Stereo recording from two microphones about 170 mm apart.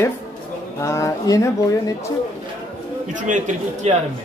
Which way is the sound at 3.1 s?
50° right (ahead or behind).